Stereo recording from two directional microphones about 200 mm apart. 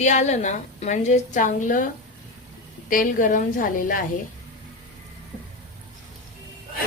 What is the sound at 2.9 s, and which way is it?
A woman's voice, 40° left (ahead or behind).